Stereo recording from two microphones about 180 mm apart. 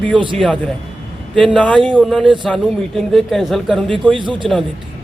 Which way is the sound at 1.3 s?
5° left (ahead or behind).